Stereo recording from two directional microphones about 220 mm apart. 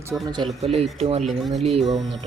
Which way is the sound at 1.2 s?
Centre (ahead or behind).